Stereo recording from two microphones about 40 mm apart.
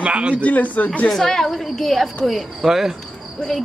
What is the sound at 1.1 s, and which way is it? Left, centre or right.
A woman's voice, centre.